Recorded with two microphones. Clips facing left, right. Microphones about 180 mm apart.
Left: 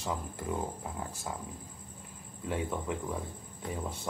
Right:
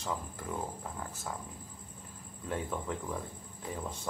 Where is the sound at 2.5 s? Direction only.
10° left (ahead or behind).